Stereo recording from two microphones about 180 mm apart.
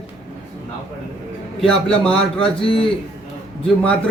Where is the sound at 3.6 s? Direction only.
5° left (ahead or behind).